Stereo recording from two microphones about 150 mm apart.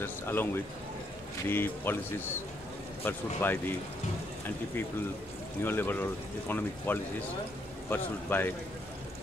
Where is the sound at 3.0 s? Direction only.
15° left (ahead or behind).